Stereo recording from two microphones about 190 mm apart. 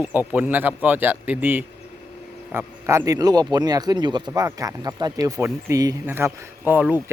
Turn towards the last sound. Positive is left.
turn(degrees=-10)  # may be behind; listen again after turning